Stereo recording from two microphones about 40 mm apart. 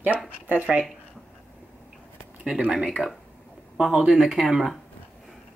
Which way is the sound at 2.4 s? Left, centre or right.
Right.